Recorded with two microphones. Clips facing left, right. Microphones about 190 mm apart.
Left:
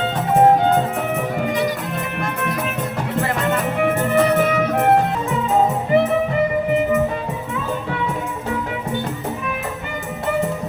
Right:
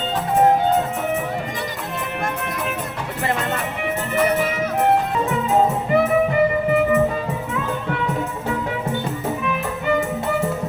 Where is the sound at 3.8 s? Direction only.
50° left (ahead or behind).